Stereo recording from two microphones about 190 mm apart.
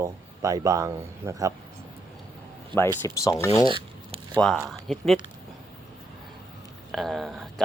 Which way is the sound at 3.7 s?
25° right (ahead or behind).